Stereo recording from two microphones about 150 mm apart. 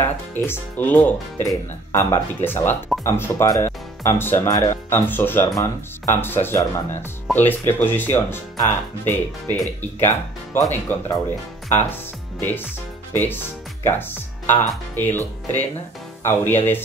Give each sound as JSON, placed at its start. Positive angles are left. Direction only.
{"t": 0.0, "sound": "speech", "side_deg": 15}